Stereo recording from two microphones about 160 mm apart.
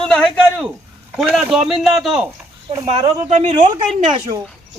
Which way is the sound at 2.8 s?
40° right (ahead or behind).